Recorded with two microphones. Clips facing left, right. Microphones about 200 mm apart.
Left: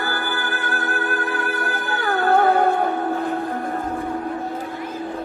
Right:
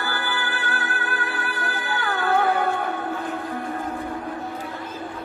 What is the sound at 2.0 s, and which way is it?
Music, 50° left (ahead or behind).